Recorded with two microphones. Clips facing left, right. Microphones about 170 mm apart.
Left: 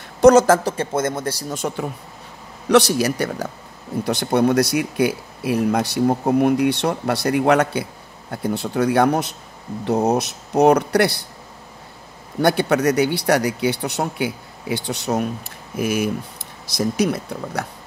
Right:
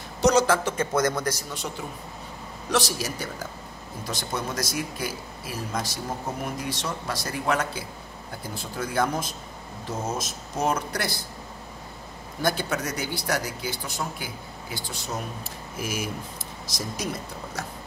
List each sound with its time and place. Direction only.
0.2 s speech: 50° left (ahead or behind)
0.7 s speech: 25° left (ahead or behind)
1.6 s speech: 60° left (ahead or behind)
12.4 s speech: 65° left (ahead or behind)